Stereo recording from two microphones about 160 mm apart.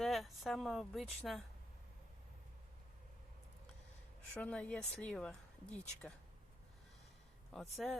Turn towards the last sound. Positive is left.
turn(degrees=0)  # may be behind; listen again after turning